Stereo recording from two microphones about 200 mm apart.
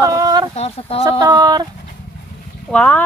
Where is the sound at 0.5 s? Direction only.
30° left (ahead or behind).